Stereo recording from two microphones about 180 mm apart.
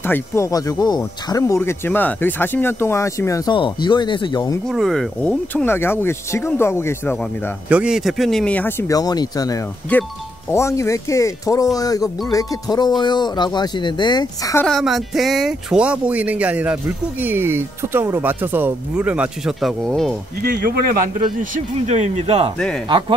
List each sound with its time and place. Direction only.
0.0 s speech: 15° left (ahead or behind)
4.6 s speech: centre (ahead or behind)
7.7 s speech: 5° right (ahead or behind); by 9.6 s 20° left (ahead or behind)
9.9 s speech: 10° left (ahead or behind)
14.7 s speech: centre (ahead or behind)
20.4 s speech: 55° right (ahead or behind)
21.4 s speech: 40° right (ahead or behind)